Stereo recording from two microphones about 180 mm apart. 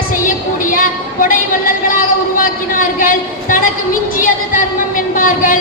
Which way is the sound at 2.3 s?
50° left (ahead or behind).